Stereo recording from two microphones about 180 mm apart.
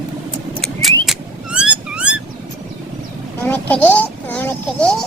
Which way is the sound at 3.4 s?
10° left (ahead or behind).